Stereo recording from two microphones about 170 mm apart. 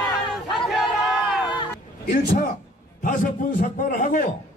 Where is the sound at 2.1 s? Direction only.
55° left (ahead or behind).